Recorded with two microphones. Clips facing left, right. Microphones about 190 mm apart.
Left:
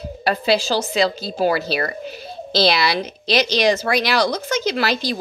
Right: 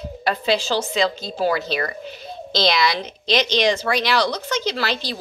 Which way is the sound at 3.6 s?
40° left (ahead or behind).